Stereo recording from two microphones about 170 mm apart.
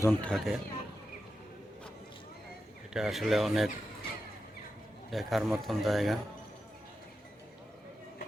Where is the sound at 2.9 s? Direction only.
Centre (ahead or behind).